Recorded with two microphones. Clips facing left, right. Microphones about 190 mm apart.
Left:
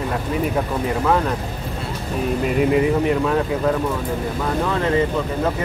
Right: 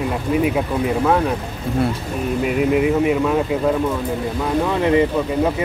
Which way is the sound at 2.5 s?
5° right (ahead or behind).